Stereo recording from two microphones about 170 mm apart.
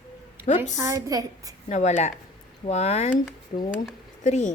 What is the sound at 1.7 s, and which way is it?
A woman's voice, 45° left (ahead or behind).